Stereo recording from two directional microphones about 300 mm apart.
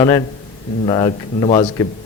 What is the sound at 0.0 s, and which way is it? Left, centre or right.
A man's voice, centre.